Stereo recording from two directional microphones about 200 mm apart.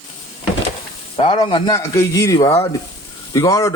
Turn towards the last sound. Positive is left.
turn(degrees=15)  # may be behind; listen again after turning